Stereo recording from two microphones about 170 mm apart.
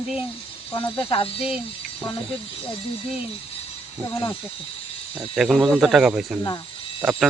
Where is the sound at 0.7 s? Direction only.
30° left (ahead or behind).